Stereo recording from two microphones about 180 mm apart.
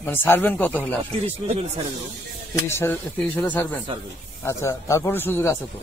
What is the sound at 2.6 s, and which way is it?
A man's voice, 15° left (ahead or behind).